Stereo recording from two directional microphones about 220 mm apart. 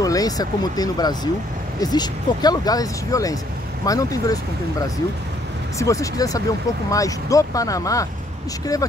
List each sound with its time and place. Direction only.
0.0 s speech: 15° left (ahead or behind)